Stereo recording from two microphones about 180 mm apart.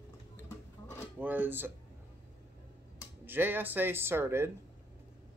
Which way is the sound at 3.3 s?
10° right (ahead or behind).